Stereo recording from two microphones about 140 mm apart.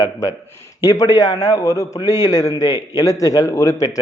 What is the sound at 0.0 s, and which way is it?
A man's voice, 25° left (ahead or behind).